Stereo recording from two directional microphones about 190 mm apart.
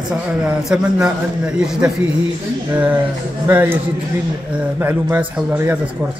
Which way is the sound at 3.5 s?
10° right (ahead or behind).